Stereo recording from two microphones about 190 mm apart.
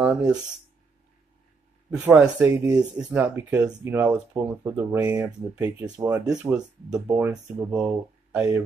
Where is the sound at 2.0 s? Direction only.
10° right (ahead or behind).